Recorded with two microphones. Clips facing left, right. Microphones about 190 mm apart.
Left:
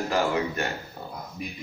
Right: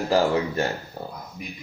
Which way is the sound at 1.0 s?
35° right (ahead or behind).